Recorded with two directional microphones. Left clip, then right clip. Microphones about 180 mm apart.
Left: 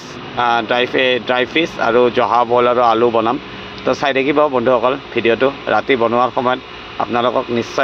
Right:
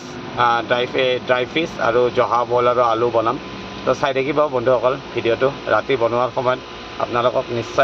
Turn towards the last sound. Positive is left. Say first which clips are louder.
# left 4 dB
turn(degrees=25)  # may be behind; listen again after turning